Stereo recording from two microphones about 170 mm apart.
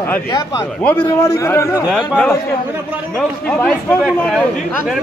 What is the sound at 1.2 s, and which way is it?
Speech, 15° left (ahead or behind).